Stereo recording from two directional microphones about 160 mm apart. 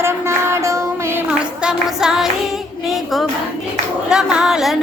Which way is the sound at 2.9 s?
Centre (ahead or behind).